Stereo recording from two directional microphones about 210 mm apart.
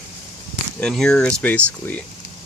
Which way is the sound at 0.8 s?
5° left (ahead or behind).